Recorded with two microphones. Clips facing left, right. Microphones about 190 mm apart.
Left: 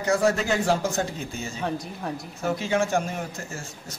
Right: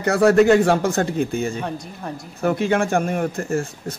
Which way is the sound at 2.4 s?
60° right (ahead or behind).